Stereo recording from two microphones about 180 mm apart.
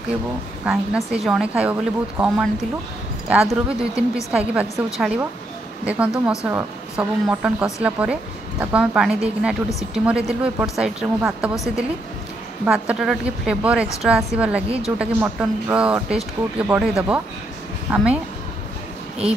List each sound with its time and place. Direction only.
0.7 s speech: centre (ahead or behind)